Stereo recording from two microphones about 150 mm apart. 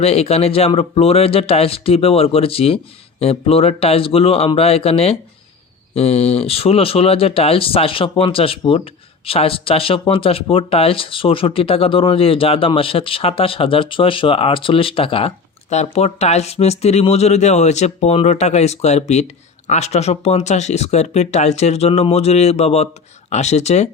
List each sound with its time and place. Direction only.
0.0 s speech: 45° left (ahead or behind)